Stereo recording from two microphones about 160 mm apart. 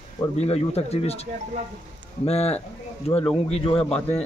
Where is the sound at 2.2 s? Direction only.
40° left (ahead or behind).